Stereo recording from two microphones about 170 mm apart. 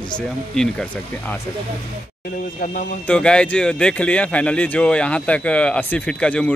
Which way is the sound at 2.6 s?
50° left (ahead or behind).